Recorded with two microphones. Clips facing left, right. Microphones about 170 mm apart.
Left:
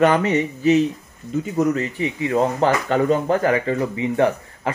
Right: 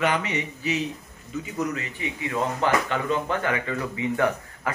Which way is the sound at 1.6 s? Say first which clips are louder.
Left 9 dB; 35° left (ahead or behind).